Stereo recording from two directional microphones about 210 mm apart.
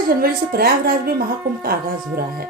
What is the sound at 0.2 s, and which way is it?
Speech, 45° right (ahead or behind).